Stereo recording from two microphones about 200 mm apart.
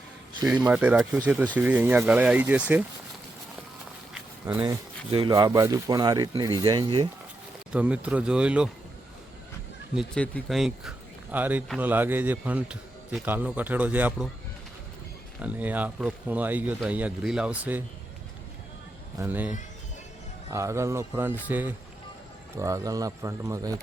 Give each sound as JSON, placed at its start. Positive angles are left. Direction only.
{"t": 0.7, "sound": "speech", "side_deg": -5}
{"t": 4.1, "sound": "walk", "side_deg": -10}
{"t": 5.1, "sound": "speech", "side_deg": -20}
{"t": 7.7, "sound": "speech", "side_deg": -5}
{"t": 9.9, "sound": "speech", "side_deg": 0}
{"t": 15.4, "sound": "speech", "side_deg": -5}
{"t": 19.2, "sound": "speech", "side_deg": -10}